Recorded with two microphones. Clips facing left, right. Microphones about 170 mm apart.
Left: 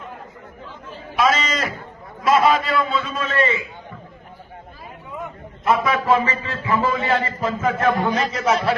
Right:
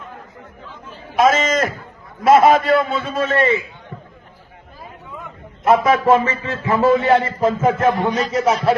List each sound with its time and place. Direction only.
1.1 s a man's voice: 45° right (ahead or behind)
5.6 s a man's voice: 50° right (ahead or behind)
8.0 s a man's voice: 20° right (ahead or behind)